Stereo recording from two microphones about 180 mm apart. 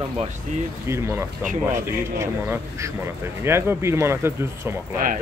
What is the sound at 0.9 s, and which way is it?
Speech, 15° right (ahead or behind).